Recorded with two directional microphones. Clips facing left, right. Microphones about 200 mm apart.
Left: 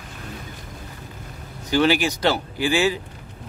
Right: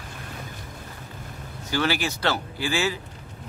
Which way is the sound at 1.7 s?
15° left (ahead or behind).